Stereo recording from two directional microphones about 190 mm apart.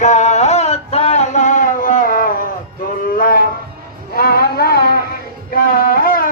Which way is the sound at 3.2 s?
45° left (ahead or behind).